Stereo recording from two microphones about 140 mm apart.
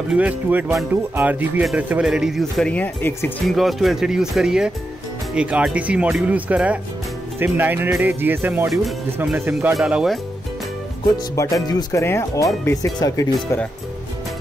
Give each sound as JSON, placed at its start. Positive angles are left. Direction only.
{"t": 0.1, "sound": "speech", "side_deg": -10}
{"t": 3.4, "sound": "speech", "side_deg": 0}
{"t": 8.6, "sound": "speech", "side_deg": -5}
{"t": 9.8, "sound": "speech", "side_deg": -5}
{"t": 11.6, "sound": "speech", "side_deg": 25}